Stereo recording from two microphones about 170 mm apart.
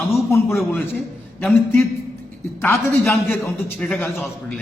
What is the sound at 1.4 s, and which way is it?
A man's voice, 10° left (ahead or behind).